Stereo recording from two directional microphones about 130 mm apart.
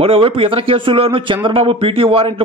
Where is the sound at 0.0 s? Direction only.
45° right (ahead or behind).